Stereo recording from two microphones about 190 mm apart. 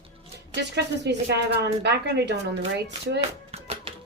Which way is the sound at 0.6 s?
65° right (ahead or behind).